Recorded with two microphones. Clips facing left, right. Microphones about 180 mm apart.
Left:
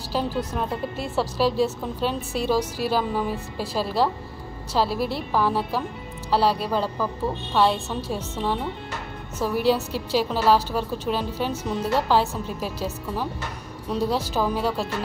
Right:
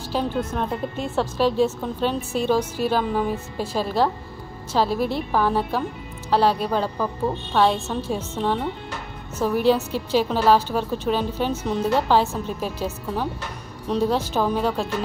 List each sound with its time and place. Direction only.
0.1 s a woman's voice: 5° left (ahead or behind)